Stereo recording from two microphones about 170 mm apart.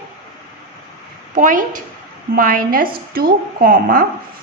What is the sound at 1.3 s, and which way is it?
A woman's voice, 50° right (ahead or behind).